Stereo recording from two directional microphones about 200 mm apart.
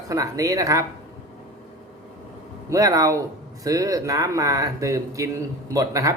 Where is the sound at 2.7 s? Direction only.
15° right (ahead or behind).